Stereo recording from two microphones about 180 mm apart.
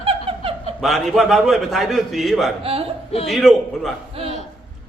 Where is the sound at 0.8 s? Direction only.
Centre (ahead or behind).